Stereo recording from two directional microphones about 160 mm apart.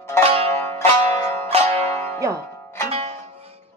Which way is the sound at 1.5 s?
40° right (ahead or behind).